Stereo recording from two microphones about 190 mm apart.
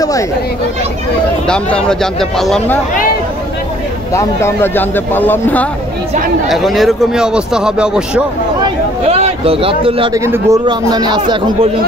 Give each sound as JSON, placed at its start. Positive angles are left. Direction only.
{"t": 1.5, "sound": "speech", "side_deg": 5}
{"t": 4.1, "sound": "a man's voice", "side_deg": 15}
{"t": 8.6, "sound": "a sound", "side_deg": -30}
{"t": 10.1, "sound": "speech", "side_deg": -15}